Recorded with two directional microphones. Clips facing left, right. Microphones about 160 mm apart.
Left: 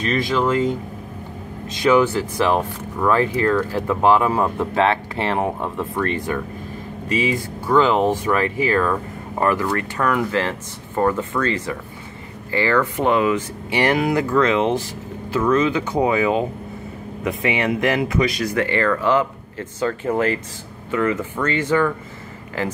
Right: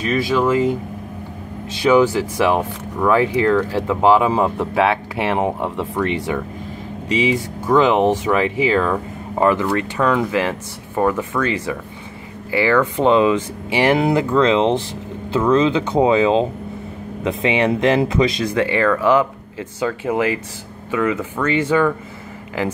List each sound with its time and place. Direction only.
0.0 s speech: 10° right (ahead or behind)
1.9 s speech: 10° right (ahead or behind)